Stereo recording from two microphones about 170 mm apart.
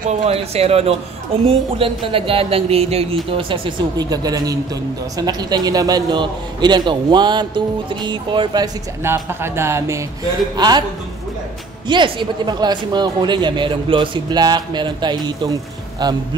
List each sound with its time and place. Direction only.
0.1 s speech: 35° right (ahead or behind)
9.0 s speech: 15° right (ahead or behind)
11.9 s speech: 25° right (ahead or behind)